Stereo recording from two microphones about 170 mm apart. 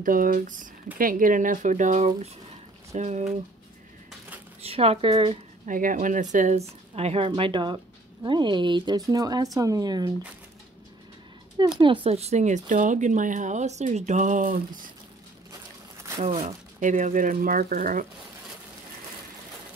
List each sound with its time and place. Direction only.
0.0 s speech: 55° right (ahead or behind)
4.6 s speech: 35° right (ahead or behind)
5.7 s a woman's voice: 50° right (ahead or behind); by 10.1 s 20° right (ahead or behind)
11.5 s speech: 25° right (ahead or behind); by 14.6 s 50° right (ahead or behind)
16.2 s speech: 40° right (ahead or behind)